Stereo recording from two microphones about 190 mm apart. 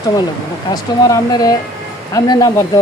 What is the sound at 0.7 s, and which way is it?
Speech, 20° left (ahead or behind).